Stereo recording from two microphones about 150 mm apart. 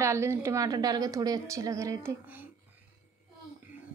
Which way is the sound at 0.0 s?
20° right (ahead or behind).